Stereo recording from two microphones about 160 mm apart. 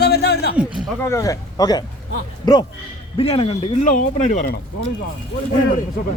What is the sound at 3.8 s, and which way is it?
Speech, 55° left (ahead or behind).